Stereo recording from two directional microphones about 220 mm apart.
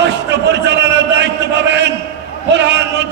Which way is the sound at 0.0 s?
50° right (ahead or behind).